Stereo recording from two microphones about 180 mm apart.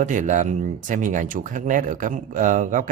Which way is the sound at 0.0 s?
45° right (ahead or behind).